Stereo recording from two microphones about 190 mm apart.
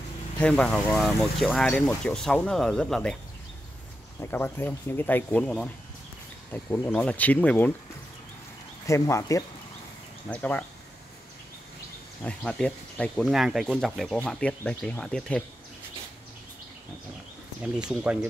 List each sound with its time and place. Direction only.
0.4 s speech: 5° left (ahead or behind)
4.2 s speech: 10° left (ahead or behind)
8.8 s speech: 15° left (ahead or behind)
12.2 s speech: 5° left (ahead or behind)
17.8 s speech: 5° right (ahead or behind)